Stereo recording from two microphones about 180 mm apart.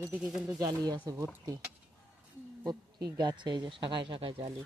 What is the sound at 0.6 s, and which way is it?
Speech, 20° right (ahead or behind).